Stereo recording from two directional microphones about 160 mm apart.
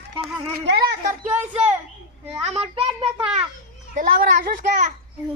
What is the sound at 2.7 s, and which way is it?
Speech, 40° right (ahead or behind).